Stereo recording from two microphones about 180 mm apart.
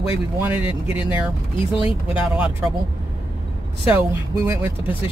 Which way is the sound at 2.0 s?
10° right (ahead or behind).